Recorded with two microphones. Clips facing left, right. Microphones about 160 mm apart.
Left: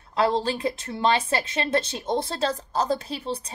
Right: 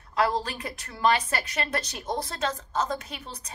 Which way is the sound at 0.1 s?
30° left (ahead or behind).